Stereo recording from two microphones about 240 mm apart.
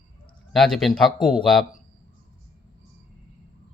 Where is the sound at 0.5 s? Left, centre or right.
Centre.